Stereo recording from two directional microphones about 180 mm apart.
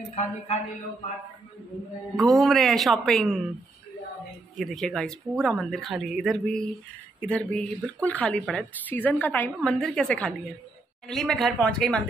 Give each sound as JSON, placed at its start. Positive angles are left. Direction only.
{"t": 0.1, "sound": "speech", "side_deg": 40}
{"t": 2.1, "sound": "speech", "side_deg": 0}
{"t": 4.6, "sound": "speech", "side_deg": 0}